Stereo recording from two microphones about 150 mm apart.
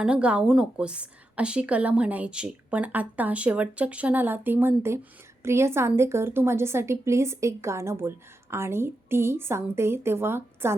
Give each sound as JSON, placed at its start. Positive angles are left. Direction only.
{"t": 0.0, "sound": "a woman's voice", "side_deg": -5}